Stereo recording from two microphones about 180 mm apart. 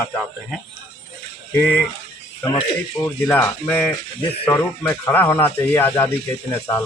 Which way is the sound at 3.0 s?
10° left (ahead or behind).